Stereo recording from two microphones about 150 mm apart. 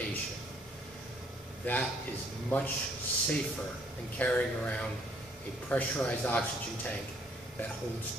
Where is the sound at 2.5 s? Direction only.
10° left (ahead or behind).